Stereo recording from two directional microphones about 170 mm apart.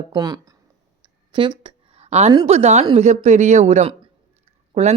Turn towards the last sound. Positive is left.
turn(degrees=-40)  # may be behind; listen again after turning